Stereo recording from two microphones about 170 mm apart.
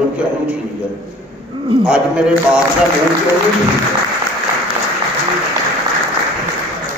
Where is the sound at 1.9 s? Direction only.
5° right (ahead or behind).